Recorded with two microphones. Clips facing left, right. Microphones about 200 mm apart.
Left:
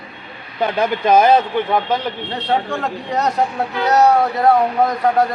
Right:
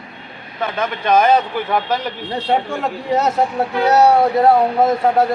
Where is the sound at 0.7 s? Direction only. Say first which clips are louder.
Left 2 dB; 5° left (ahead or behind).